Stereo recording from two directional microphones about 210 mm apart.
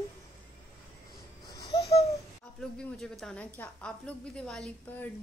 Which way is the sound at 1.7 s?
20° left (ahead or behind).